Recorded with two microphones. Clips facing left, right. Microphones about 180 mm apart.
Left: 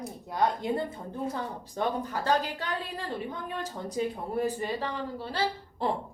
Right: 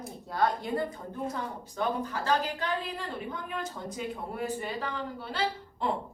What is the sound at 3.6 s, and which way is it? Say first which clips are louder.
A woman's voice: left 4 dB; 35° left (ahead or behind).